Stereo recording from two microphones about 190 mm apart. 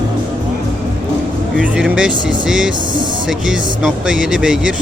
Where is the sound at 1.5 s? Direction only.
5° right (ahead or behind).